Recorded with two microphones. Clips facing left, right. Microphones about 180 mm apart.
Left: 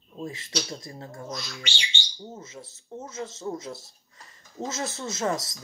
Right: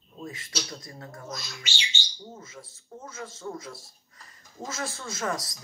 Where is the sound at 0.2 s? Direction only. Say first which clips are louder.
Left 4 dB; 25° left (ahead or behind).